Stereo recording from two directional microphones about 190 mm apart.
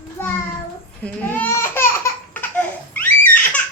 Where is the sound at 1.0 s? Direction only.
10° left (ahead or behind).